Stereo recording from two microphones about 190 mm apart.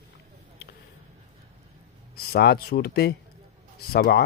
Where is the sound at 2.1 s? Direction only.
55° left (ahead or behind).